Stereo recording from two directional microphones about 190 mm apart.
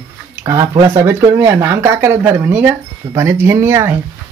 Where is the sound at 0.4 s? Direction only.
15° right (ahead or behind).